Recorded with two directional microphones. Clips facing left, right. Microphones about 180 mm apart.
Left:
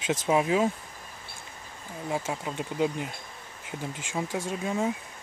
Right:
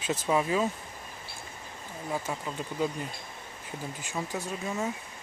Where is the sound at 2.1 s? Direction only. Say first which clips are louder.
Left 2 dB; 10° left (ahead or behind).